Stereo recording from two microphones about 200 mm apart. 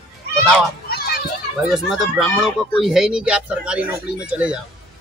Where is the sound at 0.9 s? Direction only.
50° left (ahead or behind).